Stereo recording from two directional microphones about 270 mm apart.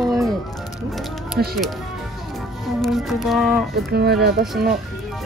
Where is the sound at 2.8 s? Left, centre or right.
Centre.